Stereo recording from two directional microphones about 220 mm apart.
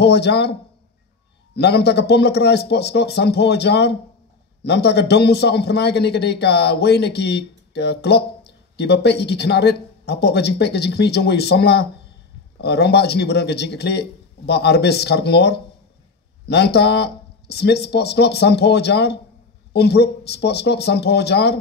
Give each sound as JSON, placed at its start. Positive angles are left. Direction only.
{"t": 0.0, "sound": "a man's voice", "side_deg": 50}